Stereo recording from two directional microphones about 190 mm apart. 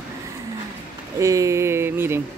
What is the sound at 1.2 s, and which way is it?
Speech, 15° right (ahead or behind).